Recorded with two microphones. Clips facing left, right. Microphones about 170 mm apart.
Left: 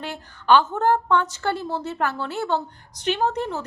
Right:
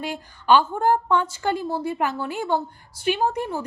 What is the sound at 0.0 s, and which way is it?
A woman's voice, 10° right (ahead or behind).